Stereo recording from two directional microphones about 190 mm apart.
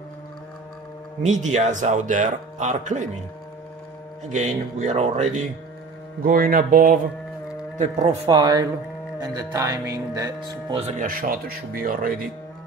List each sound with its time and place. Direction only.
1.2 s speech: 40° right (ahead or behind)
4.3 s speech: 35° right (ahead or behind)
6.2 s speech: 50° right (ahead or behind)
7.7 s speech: 35° right (ahead or behind)
8.3 s speech: 20° right (ahead or behind)
11.0 s speech: 50° right (ahead or behind)